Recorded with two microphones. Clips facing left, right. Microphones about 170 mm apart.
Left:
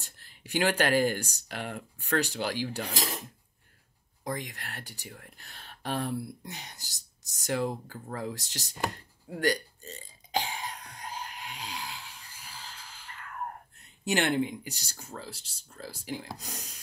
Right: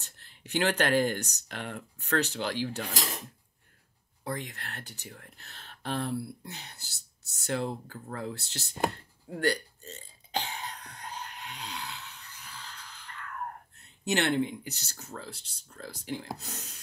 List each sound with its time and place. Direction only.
0.0 s speech: 10° left (ahead or behind)
4.2 s speech: 15° left (ahead or behind)
8.9 s burping: 15° left (ahead or behind)
12.0 s a sound: 30° left (ahead or behind)
14.0 s speech: 15° left (ahead or behind)